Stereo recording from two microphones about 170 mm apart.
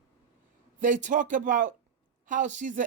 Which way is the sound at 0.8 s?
45° right (ahead or behind).